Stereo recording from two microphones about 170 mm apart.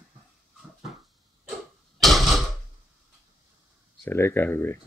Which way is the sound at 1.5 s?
Centre (ahead or behind).